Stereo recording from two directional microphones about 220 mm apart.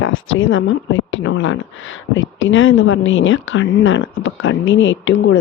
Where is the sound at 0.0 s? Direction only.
60° left (ahead or behind).